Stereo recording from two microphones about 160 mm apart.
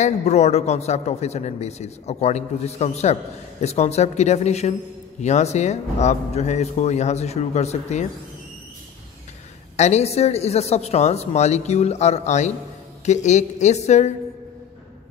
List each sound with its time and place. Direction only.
0.0 s a man's voice: 45° left (ahead or behind)
9.8 s a man's voice: 45° left (ahead or behind)